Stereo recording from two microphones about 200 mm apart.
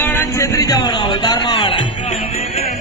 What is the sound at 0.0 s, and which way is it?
Music, 10° left (ahead or behind).